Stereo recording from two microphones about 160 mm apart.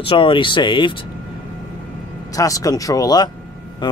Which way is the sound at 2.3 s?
20° left (ahead or behind).